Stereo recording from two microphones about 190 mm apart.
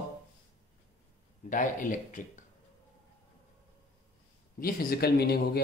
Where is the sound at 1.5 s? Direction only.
45° left (ahead or behind).